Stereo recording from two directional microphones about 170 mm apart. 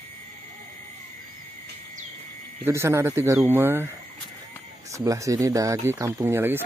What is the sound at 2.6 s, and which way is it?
Speech, 15° right (ahead or behind).